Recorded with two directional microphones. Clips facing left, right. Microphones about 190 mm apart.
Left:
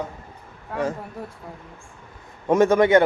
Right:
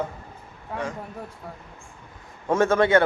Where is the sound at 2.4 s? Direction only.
15° left (ahead or behind).